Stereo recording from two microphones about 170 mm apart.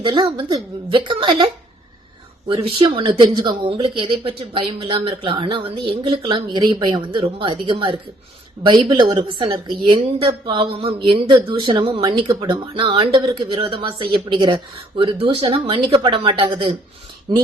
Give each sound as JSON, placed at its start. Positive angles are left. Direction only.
{"t": 0.0, "sound": "speech", "side_deg": -30}
{"t": 2.5, "sound": "speech", "side_deg": -35}